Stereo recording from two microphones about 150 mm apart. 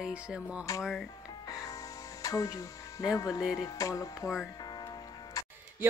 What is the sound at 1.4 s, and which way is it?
Music, 25° left (ahead or behind).